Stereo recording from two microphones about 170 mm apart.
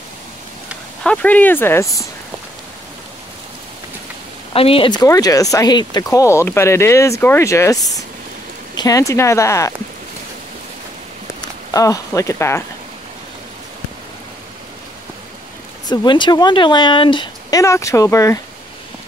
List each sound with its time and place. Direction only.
1.0 s speech: 10° left (ahead or behind)
4.6 s speech: 35° left (ahead or behind); by 9.7 s 15° left (ahead or behind)
11.7 s speech: 20° left (ahead or behind)
15.9 s speech: 25° left (ahead or behind)